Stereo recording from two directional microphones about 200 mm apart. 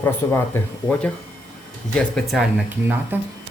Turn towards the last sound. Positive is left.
turn(degrees=-5)  # may be behind; listen again after turning